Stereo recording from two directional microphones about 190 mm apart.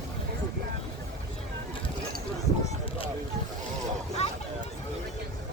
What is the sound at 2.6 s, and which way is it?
Boat, 30° left (ahead or behind).